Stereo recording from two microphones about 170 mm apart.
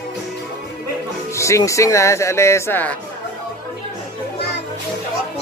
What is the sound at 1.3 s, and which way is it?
Speech, 15° left (ahead or behind).